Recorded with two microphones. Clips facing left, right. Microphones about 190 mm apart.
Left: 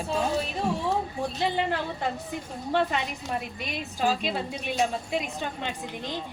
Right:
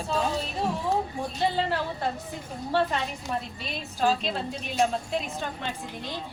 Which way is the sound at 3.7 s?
10° left (ahead or behind).